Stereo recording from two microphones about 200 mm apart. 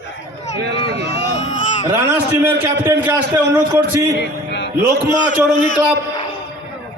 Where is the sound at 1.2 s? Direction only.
35° left (ahead or behind).